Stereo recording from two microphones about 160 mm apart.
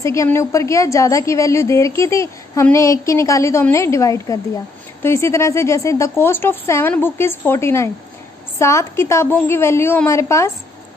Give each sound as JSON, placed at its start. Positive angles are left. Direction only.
{"t": 0.0, "sound": "a woman's voice", "side_deg": 20}